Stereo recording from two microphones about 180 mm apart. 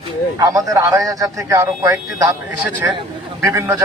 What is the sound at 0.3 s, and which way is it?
Speech, 20° right (ahead or behind).